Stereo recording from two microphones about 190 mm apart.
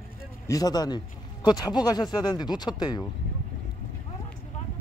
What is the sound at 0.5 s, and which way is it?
Speech, 20° left (ahead or behind).